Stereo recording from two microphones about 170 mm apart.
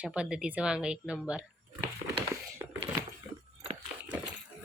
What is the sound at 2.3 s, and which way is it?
Computer keyboard, 15° right (ahead or behind).